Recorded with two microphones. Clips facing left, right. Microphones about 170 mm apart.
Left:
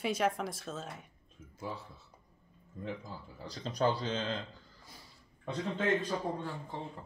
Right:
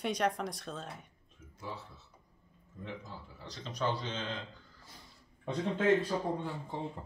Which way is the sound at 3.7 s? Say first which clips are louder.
Left 4 dB; 35° left (ahead or behind).